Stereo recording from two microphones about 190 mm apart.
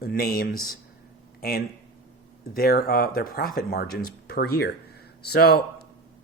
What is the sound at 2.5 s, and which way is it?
Speech, 55° left (ahead or behind).